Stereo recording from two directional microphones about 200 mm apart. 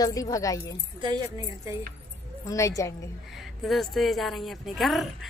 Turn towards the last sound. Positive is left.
turn(degrees=0)  # may be behind; listen again after turning